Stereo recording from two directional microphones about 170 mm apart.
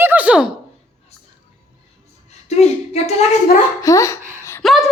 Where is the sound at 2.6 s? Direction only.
40° left (ahead or behind).